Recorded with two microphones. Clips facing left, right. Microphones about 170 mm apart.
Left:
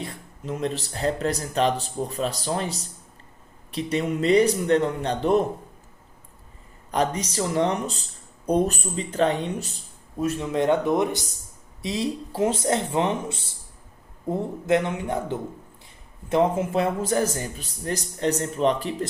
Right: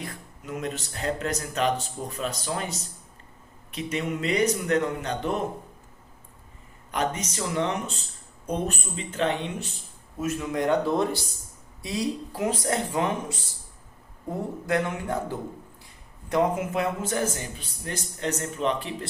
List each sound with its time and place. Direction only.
0.0 s speech: 30° left (ahead or behind)
6.9 s speech: 35° left (ahead or behind)